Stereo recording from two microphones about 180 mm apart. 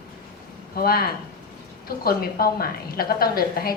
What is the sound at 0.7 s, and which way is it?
A woman's voice, 60° left (ahead or behind).